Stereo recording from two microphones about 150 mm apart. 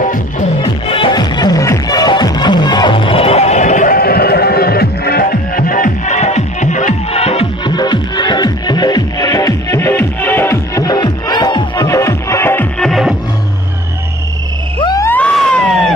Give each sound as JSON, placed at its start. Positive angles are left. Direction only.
{"t": 0.6, "sound": "music", "side_deg": 35}
{"t": 7.7, "sound": "music", "side_deg": 30}
{"t": 12.7, "sound": "music", "side_deg": 0}
{"t": 14.8, "sound": "music", "side_deg": 30}
{"t": 15.0, "sound": "a sound", "side_deg": 10}